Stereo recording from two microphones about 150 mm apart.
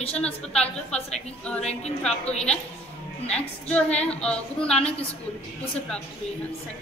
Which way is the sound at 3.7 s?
10° left (ahead or behind).